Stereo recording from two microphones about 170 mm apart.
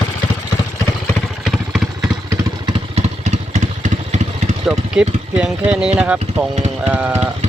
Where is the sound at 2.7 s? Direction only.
40° right (ahead or behind).